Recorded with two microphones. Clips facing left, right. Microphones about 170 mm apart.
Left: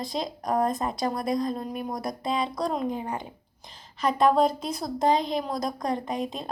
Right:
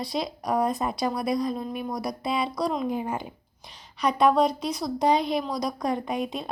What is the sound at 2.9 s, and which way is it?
Speech, 15° right (ahead or behind).